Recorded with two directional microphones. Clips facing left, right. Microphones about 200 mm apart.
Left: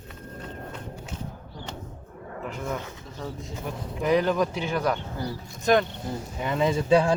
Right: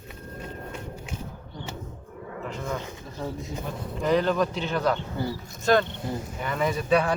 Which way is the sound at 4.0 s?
10° left (ahead or behind).